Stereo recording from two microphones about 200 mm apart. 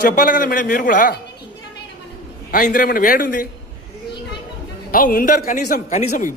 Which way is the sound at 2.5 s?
40° left (ahead or behind).